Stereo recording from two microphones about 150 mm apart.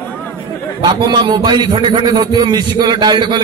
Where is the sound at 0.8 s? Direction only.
30° right (ahead or behind).